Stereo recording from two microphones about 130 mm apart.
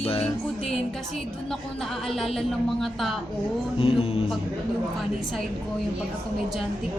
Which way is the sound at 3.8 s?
50° left (ahead or behind).